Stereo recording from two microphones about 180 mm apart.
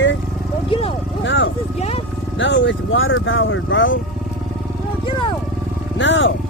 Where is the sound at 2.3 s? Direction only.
90° left.